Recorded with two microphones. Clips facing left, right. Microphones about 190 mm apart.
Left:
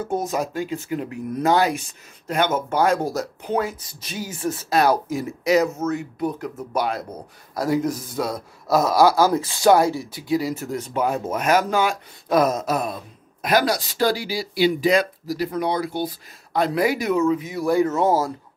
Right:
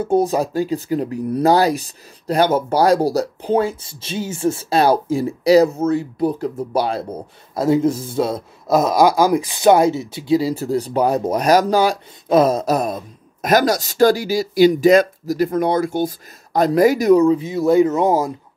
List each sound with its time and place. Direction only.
0.0 s a man's voice: 30° right (ahead or behind); by 18.3 s 15° right (ahead or behind)